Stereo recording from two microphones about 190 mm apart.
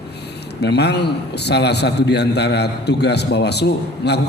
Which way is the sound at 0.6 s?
60° left (ahead or behind).